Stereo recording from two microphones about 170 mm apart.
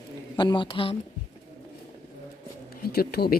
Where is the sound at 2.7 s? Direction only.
65° left (ahead or behind).